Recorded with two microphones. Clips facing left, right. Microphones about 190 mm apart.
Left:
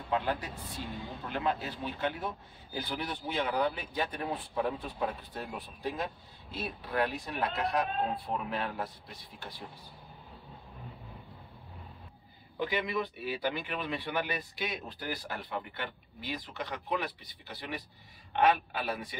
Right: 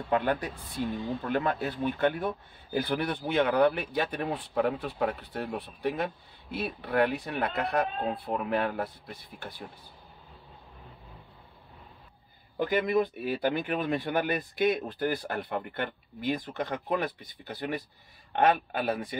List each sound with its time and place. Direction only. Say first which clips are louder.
0.1 s speech: right 4 dB; 60° right (ahead or behind)
12.5 s speech: right 7 dB; 45° right (ahead or behind)